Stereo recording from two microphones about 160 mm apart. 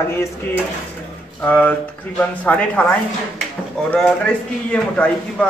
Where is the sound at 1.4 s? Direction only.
10° left (ahead or behind).